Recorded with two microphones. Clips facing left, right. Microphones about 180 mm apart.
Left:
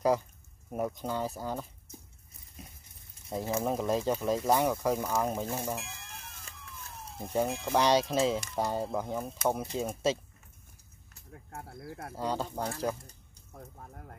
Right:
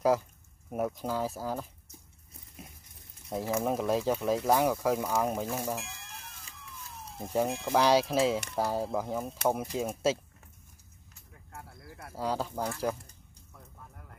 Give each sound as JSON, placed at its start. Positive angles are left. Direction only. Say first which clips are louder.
{"t": 0.7, "sound": "speech", "louder": "right 1 dB", "side_deg": -5}
{"t": 3.3, "sound": "speech", "louder": "right 1 dB", "side_deg": 0}
{"t": 11.5, "sound": "a sound", "louder": "left 5 dB", "side_deg": 45}
{"t": 12.2, "sound": "speech", "louder": "right 1 dB", "side_deg": -5}
{"t": 13.5, "sound": "music", "louder": "left 6 dB", "side_deg": 45}